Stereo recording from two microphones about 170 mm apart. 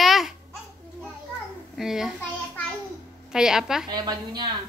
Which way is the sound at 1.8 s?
Centre (ahead or behind).